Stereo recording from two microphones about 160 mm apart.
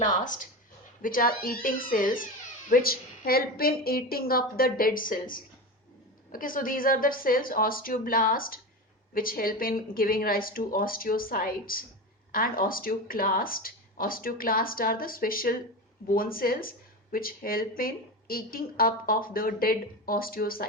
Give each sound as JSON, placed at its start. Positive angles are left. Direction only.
{"t": 1.0, "sound": "a woman's voice", "side_deg": 60}